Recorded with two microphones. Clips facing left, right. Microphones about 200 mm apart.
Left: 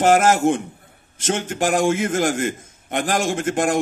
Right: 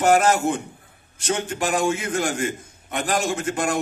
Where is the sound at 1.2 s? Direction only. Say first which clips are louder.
Left 3 dB; 45° left (ahead or behind).